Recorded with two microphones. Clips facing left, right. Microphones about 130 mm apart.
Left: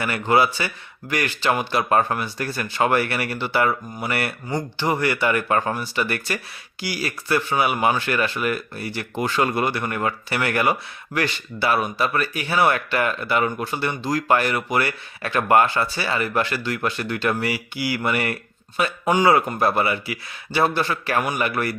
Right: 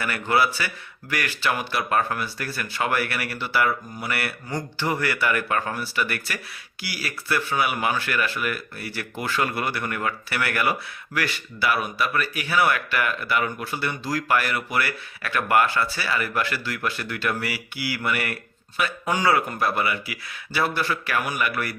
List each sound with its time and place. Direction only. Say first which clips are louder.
0.0 s speech: left 3 dB; 20° left (ahead or behind)